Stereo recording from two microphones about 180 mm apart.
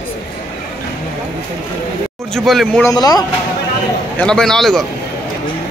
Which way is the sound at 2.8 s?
20° left (ahead or behind).